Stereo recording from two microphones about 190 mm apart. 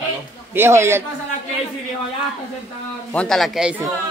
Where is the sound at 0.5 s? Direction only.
15° right (ahead or behind).